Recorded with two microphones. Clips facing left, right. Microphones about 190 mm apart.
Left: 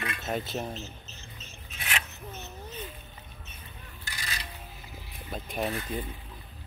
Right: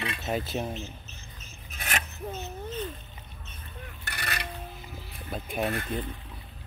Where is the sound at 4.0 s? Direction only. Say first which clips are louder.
Right 5 dB; 65° right (ahead or behind).